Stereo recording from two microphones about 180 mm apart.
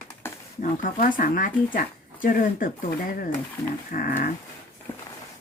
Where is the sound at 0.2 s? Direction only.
15° left (ahead or behind).